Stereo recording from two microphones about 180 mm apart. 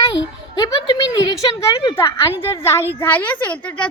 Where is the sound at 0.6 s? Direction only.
20° left (ahead or behind).